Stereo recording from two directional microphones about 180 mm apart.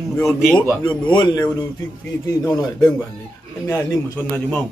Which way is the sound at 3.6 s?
15° left (ahead or behind).